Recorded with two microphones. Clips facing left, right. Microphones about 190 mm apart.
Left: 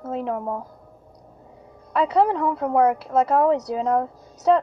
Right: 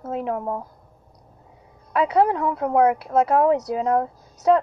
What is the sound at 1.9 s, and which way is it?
A woman's voice, 5° right (ahead or behind).